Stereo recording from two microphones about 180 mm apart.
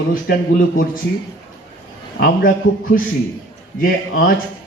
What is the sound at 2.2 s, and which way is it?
A man's voice, 50° left (ahead or behind).